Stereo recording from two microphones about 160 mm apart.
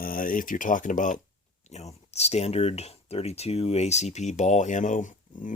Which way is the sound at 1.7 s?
45° left (ahead or behind).